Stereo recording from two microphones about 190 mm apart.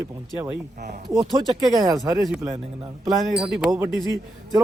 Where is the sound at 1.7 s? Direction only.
20° right (ahead or behind).